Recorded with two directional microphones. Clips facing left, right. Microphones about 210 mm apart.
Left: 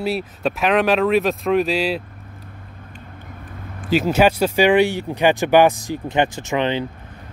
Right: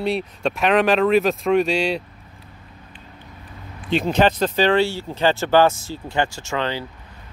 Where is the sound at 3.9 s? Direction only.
5° left (ahead or behind).